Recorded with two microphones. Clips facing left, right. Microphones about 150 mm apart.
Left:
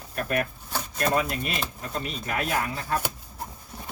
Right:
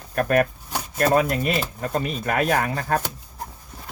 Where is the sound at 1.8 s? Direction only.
55° right (ahead or behind).